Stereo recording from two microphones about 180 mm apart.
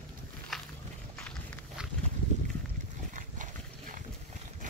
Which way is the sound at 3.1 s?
45° right (ahead or behind).